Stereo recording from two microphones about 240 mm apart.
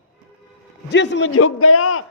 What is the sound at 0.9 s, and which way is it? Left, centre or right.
Speech, left.